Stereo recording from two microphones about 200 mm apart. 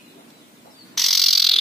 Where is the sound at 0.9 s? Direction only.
Centre (ahead or behind).